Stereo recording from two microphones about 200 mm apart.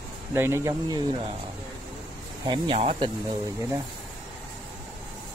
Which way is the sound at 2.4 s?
25° right (ahead or behind).